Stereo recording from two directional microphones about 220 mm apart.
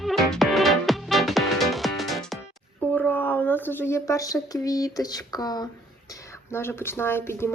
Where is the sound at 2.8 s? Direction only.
5° left (ahead or behind).